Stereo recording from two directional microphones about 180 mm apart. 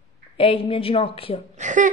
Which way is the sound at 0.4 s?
30° left (ahead or behind).